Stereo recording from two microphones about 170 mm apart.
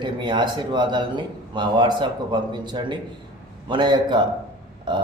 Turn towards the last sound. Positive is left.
turn(degrees=-25)  # may be behind; listen again after turning